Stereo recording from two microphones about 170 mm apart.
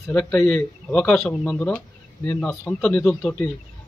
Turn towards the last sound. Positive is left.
turn(degrees=5)  # may be behind; listen again after turning